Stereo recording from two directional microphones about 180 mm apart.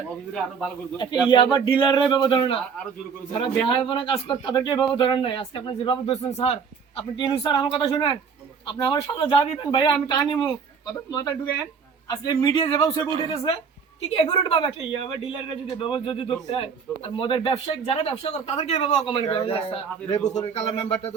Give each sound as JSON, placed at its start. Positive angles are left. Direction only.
{"t": 1.3, "sound": "speech", "side_deg": 25}
{"t": 3.7, "sound": "speech", "side_deg": 30}